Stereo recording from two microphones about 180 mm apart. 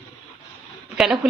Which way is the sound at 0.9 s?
5° right (ahead or behind).